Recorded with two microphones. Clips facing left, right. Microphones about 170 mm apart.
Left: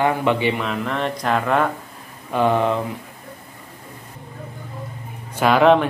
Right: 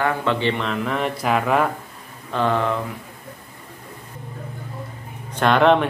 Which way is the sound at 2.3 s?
15° left (ahead or behind).